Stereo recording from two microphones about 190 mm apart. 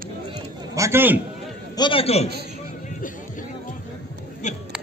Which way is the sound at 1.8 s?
30° left (ahead or behind).